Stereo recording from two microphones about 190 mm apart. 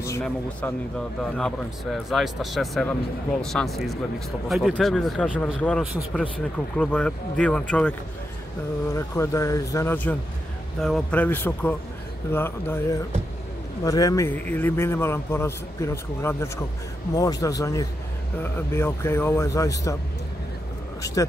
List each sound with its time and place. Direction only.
0.2 s a man's voice: 5° left (ahead or behind)
8.9 s a man's voice: 15° left (ahead or behind)
21.0 s speech: 20° left (ahead or behind)